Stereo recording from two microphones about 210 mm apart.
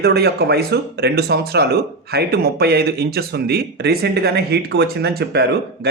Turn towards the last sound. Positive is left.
turn(degrees=-50)  # may be behind; listen again after turning